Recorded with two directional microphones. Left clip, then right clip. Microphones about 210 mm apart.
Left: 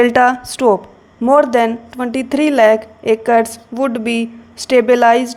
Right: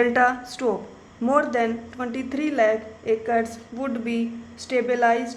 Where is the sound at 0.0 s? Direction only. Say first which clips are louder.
Left 8 dB; 35° left (ahead or behind).